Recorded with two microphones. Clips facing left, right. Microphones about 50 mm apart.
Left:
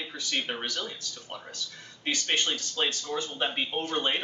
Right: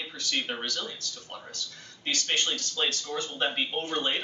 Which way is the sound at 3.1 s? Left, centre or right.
Centre.